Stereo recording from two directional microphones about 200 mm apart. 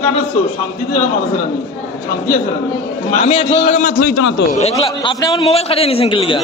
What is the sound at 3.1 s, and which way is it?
A man's voice, 35° left (ahead or behind).